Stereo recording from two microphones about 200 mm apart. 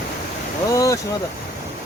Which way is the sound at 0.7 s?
15° left (ahead or behind).